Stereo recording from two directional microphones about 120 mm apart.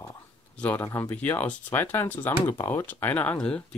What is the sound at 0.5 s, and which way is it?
Speech, 10° left (ahead or behind).